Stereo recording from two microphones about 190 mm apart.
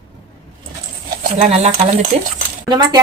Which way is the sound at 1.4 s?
35° right (ahead or behind).